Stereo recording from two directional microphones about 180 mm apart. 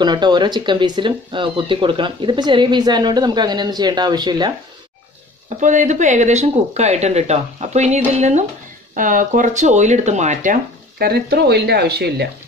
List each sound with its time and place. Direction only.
0.0 s speech: 25° right (ahead or behind)
5.6 s speech: 45° right (ahead or behind); by 12.3 s 65° right (ahead or behind)